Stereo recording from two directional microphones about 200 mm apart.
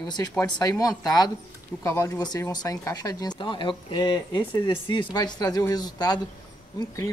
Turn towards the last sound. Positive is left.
turn(degrees=15)  # may be behind; listen again after turning